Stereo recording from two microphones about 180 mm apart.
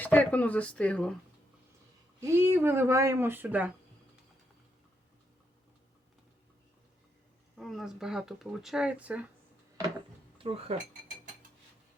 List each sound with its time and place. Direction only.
0.0 s speech: 10° left (ahead or behind)
2.2 s speech: 15° right (ahead or behind)
7.6 s speech: centre (ahead or behind)
10.3 s speech: 30° right (ahead or behind)